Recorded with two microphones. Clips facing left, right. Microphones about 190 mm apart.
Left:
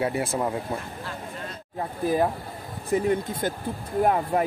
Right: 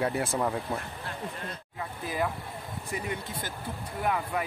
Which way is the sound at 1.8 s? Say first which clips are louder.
Left 8 dB; 45° left (ahead or behind).